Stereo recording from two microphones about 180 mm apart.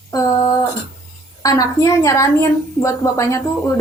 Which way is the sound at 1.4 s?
20° left (ahead or behind).